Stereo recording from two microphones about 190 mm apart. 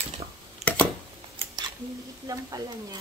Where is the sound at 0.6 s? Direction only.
35° right (ahead or behind).